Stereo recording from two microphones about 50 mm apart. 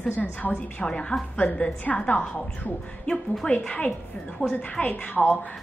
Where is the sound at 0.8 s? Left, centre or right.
Centre.